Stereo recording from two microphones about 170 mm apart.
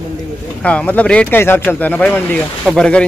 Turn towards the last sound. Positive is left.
turn(degrees=5)  # may be behind; listen again after turning